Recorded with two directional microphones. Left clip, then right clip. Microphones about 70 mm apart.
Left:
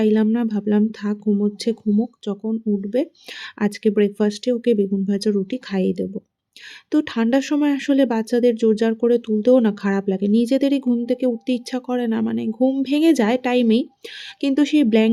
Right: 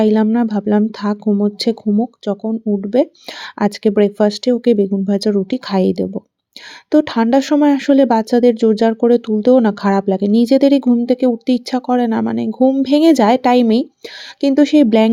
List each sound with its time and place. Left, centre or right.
0.0 s speech: right
1.0 s speech: right